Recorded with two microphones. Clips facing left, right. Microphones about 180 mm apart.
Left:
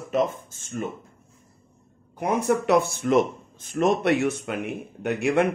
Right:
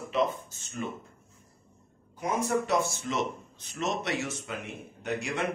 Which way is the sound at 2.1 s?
65° left (ahead or behind).